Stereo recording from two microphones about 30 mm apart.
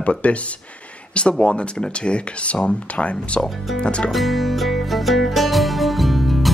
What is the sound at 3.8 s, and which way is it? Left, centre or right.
Speech, left.